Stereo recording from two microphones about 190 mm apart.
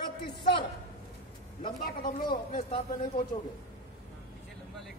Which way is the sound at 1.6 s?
50° left (ahead or behind).